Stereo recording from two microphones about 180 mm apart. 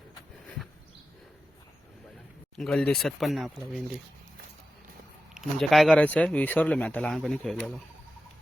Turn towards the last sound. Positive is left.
turn(degrees=5)  # may be behind; listen again after turning